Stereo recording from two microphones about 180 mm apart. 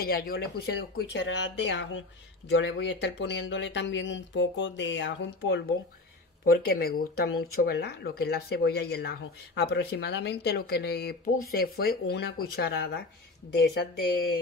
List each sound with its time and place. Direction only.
0.0 s speech: 55° left (ahead or behind); by 2.0 s 90° left
2.5 s speech: 75° left (ahead or behind)
6.4 s speech: 55° left (ahead or behind)